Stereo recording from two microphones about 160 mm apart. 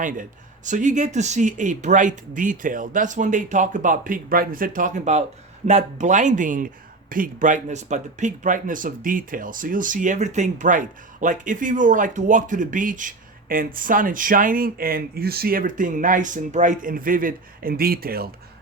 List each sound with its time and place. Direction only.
0.0 s a man's voice: 55° right (ahead or behind)